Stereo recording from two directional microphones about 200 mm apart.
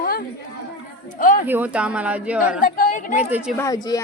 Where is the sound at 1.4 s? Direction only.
10° right (ahead or behind).